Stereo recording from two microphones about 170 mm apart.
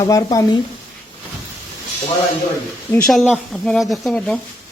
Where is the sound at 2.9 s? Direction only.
5° left (ahead or behind).